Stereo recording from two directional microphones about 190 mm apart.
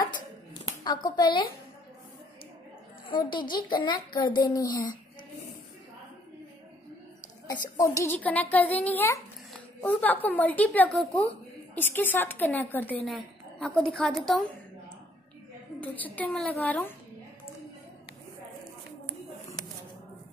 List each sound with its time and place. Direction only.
0.7 s a woman's voice: 20° left (ahead or behind)
3.1 s a child's voice: 25° left (ahead or behind)
7.4 s a woman's voice: 20° left (ahead or behind); by 14.4 s centre (ahead or behind)
15.8 s a woman's voice: 10° left (ahead or behind)